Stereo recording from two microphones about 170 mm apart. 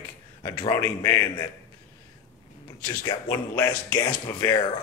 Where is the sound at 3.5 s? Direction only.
15° left (ahead or behind).